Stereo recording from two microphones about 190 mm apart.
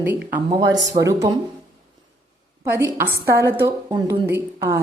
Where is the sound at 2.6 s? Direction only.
10° right (ahead or behind).